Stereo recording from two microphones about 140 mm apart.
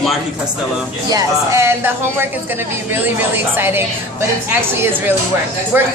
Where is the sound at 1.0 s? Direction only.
25° right (ahead or behind).